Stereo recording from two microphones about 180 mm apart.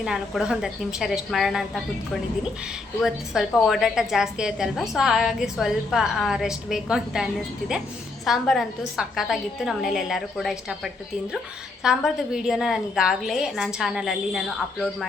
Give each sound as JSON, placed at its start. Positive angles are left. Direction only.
{"t": 0.0, "sound": "a woman's voice", "side_deg": -5}
{"t": 3.0, "sound": "a woman's voice", "side_deg": 0}
{"t": 11.8, "sound": "a woman's voice", "side_deg": -5}